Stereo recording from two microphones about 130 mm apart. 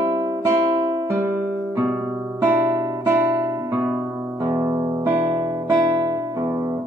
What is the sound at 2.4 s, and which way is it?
Guitar, 20° right (ahead or behind).